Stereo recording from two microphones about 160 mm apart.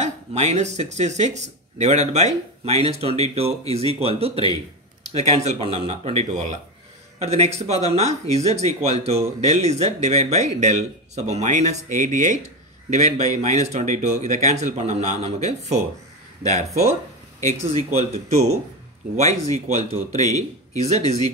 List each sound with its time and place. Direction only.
0.0 s speech: 45° right (ahead or behind)
17.4 s speech: 45° right (ahead or behind)
19.5 s speech: 45° right (ahead or behind)
20.2 s speech: 20° left (ahead or behind)